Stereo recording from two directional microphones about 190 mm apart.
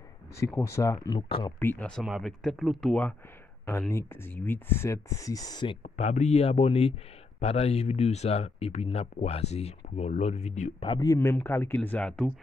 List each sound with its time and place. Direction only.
0.6 s speech: 15° left (ahead or behind)
1.6 s speech: 10° left (ahead or behind)
5.8 s speech: 35° left (ahead or behind)
10.9 s speech: 20° left (ahead or behind)